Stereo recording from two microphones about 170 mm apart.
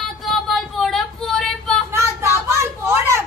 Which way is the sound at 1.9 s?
15° right (ahead or behind).